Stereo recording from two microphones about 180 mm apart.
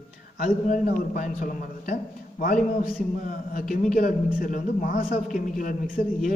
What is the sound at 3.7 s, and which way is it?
A man's voice, 45° left (ahead or behind).